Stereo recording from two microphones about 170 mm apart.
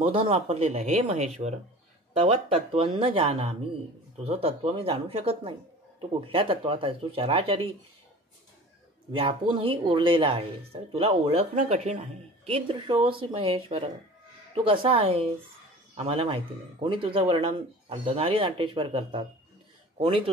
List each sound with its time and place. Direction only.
0.0 s speech: 35° right (ahead or behind)
9.1 s speech: 30° right (ahead or behind)